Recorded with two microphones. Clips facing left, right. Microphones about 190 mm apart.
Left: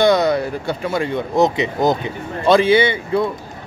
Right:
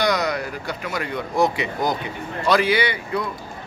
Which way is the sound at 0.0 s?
30° left (ahead or behind).